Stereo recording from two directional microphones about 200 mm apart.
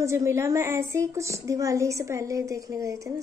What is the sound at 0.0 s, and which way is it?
A woman's voice, 15° right (ahead or behind).